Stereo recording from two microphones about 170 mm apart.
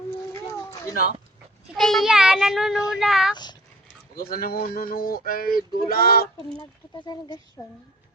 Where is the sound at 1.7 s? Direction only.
Centre (ahead or behind).